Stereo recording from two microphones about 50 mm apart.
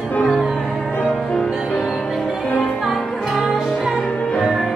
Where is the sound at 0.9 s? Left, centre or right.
Left.